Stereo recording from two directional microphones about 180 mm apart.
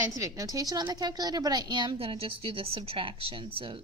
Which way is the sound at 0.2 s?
15° right (ahead or behind).